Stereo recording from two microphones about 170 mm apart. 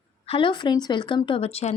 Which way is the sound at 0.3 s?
30° left (ahead or behind).